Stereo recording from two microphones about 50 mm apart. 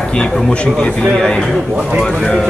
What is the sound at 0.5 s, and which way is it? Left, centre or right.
Speech, left.